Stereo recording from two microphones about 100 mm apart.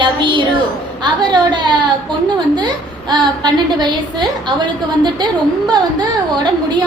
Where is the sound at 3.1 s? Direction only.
45° right (ahead or behind).